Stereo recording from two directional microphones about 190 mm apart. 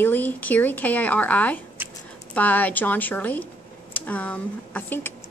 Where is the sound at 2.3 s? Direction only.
10° left (ahead or behind).